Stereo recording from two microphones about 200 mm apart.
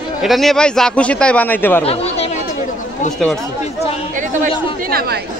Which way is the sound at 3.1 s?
5° left (ahead or behind).